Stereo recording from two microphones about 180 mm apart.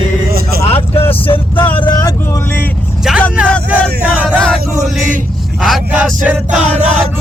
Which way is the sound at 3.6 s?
10° right (ahead or behind).